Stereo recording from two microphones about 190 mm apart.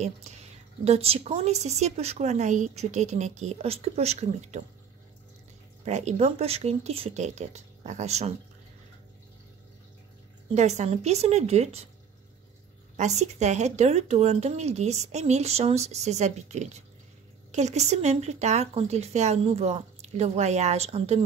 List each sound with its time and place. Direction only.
0.0 s a woman's voice: 35° right (ahead or behind)
5.9 s a woman's voice: 35° right (ahead or behind)
10.5 s a woman's voice: 35° right (ahead or behind)
12.9 s a woman's voice: 35° right (ahead or behind)